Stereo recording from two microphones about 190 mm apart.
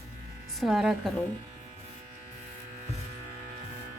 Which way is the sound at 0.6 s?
Centre (ahead or behind).